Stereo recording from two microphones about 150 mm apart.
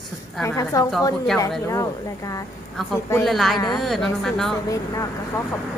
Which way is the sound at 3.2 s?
Centre (ahead or behind).